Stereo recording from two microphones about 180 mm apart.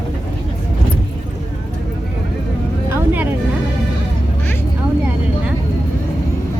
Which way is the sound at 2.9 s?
10° right (ahead or behind).